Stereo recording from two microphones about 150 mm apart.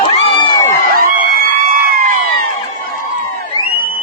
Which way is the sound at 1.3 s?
75° right (ahead or behind).